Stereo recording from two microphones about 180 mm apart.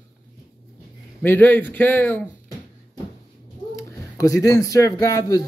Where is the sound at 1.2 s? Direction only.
10° left (ahead or behind).